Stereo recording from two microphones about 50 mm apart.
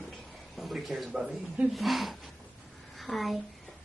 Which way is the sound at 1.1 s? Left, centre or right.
Centre.